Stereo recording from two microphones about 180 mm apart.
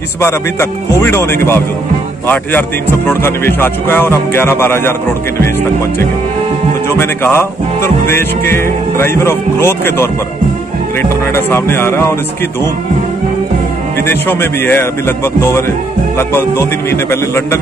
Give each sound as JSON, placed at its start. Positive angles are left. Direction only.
{"t": 0.2, "sound": "speech", "side_deg": 15}
{"t": 14.0, "sound": "speech", "side_deg": 10}